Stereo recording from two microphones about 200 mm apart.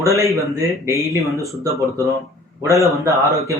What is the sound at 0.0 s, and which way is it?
Speech, 15° right (ahead or behind).